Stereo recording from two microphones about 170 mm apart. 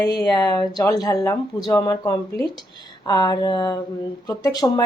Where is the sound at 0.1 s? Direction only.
25° left (ahead or behind).